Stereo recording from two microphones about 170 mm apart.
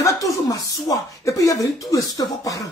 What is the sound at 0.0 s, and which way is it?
Speech, 20° left (ahead or behind).